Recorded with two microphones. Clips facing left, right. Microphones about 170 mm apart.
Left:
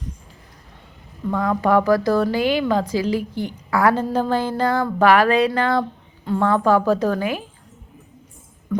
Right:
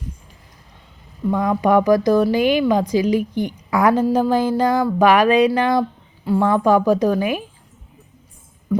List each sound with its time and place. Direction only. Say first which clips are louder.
1.3 s a woman's voice: right 2 dB; 15° right (ahead or behind)
8.7 s music: right 3 dB; 10° right (ahead or behind)